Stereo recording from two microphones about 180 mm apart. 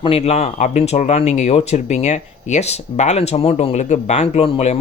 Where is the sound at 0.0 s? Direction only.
35° left (ahead or behind).